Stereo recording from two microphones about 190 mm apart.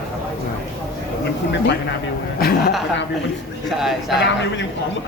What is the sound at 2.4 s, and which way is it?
Speech, 55° left (ahead or behind).